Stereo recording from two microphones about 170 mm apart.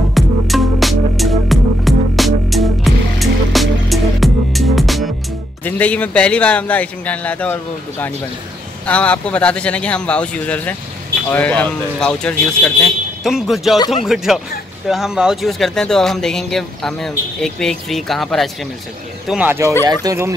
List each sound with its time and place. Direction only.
0.1 s music: centre (ahead or behind)
5.6 s speech: 10° left (ahead or behind)
8.8 s speech: 10° left (ahead or behind); by 20.3 s 20° right (ahead or behind)